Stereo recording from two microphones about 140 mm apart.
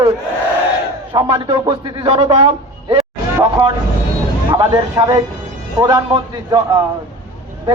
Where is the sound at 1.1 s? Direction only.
40° right (ahead or behind).